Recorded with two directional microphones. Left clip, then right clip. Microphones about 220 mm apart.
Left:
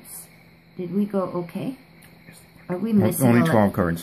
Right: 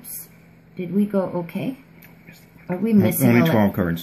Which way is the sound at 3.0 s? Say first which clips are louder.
Even; 15° left (ahead or behind).